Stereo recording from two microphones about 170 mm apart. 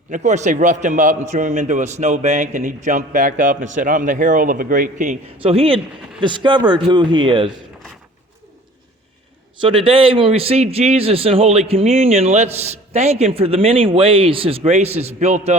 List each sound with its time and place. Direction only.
0.1 s a man's voice: 45° right (ahead or behind)
5.4 s speech: 35° right (ahead or behind)
9.6 s a man's voice: 30° right (ahead or behind)